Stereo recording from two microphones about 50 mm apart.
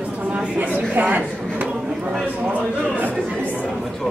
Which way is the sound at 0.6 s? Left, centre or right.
Right.